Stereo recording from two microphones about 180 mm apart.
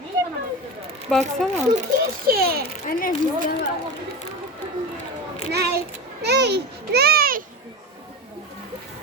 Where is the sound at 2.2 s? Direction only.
60° right (ahead or behind).